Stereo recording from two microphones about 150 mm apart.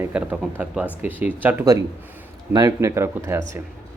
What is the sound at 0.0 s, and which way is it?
Speech, 10° right (ahead or behind).